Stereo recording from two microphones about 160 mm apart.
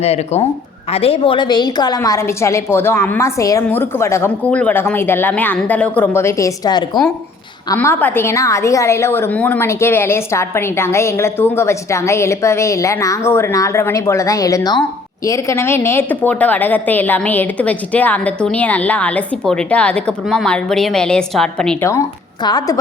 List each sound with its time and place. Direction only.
0.0 s a woman's voice: 40° left (ahead or behind)
7.7 s a woman's voice: 15° left (ahead or behind)
22.4 s a woman's voice: 25° left (ahead or behind)